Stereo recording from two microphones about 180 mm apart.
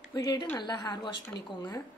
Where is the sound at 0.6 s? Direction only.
25° left (ahead or behind).